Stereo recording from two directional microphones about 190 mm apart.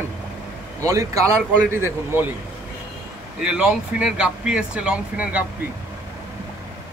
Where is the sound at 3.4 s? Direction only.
5° right (ahead or behind).